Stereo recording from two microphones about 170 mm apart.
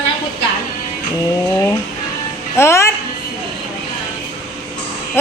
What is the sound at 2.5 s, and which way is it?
Speech, 15° left (ahead or behind).